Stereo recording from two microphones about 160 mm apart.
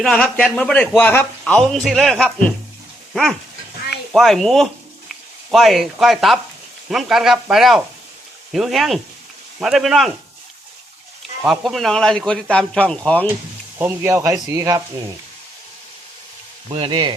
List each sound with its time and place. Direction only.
0.0 s a man's voice: 5° left (ahead or behind)
3.1 s dog: centre (ahead or behind)
4.1 s a man's voice: centre (ahead or behind)
11.4 s a man's voice: centre (ahead or behind)
13.7 s speech: 15° right (ahead or behind)
16.7 s speech: 35° right (ahead or behind)